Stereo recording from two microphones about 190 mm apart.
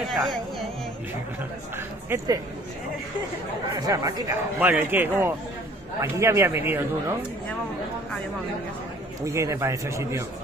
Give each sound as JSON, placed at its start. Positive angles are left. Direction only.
{"t": 0.1, "sound": "speech", "side_deg": 0}
{"t": 2.0, "sound": "a man's voice", "side_deg": -15}
{"t": 3.8, "sound": "a man's voice", "side_deg": -15}
{"t": 9.2, "sound": "a man's voice", "side_deg": -15}